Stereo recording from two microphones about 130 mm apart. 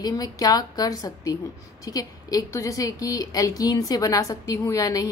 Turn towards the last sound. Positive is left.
turn(degrees=25)  # may be behind; listen again after turning